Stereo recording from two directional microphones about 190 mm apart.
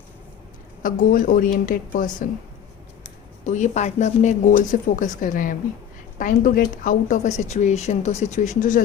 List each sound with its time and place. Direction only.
0.8 s a woman's voice: 45° left (ahead or behind)
3.4 s speech: 40° left (ahead or behind)